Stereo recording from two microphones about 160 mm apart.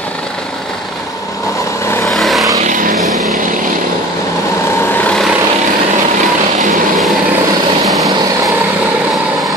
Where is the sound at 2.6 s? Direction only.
55° right (ahead or behind).